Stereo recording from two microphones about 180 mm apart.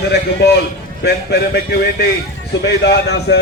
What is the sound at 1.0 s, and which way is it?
A man's voice, 65° left (ahead or behind).